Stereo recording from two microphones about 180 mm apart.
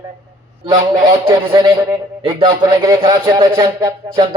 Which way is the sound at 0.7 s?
20° right (ahead or behind).